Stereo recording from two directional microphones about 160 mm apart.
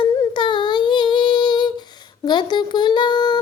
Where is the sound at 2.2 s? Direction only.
25° left (ahead or behind).